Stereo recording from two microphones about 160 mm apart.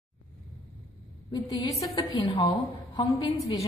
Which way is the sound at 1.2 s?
20° left (ahead or behind).